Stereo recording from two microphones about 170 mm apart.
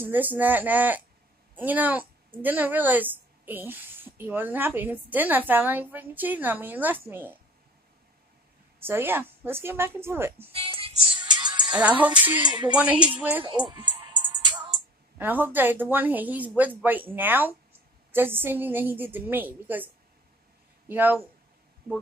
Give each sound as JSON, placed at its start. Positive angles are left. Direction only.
{"t": 0.0, "sound": "a woman's voice", "side_deg": -10}
{"t": 8.7, "sound": "a woman's voice", "side_deg": -15}
{"t": 10.5, "sound": "music", "side_deg": -35}
{"t": 11.7, "sound": "a woman's voice", "side_deg": -10}
{"t": 12.4, "sound": "music", "side_deg": -25}
{"t": 12.7, "sound": "a woman's voice", "side_deg": -10}
{"t": 13.7, "sound": "music", "side_deg": -30}
{"t": 15.1, "sound": "a woman's voice", "side_deg": -10}
{"t": 20.9, "sound": "a woman's voice", "side_deg": -10}